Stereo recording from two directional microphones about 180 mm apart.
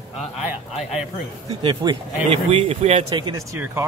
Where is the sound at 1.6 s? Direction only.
30° right (ahead or behind).